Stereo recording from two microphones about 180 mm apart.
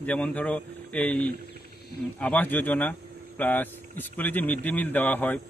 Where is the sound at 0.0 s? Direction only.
5° left (ahead or behind).